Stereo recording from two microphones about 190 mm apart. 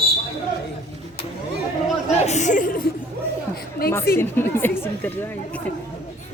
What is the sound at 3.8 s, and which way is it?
Speech, 50° left (ahead or behind).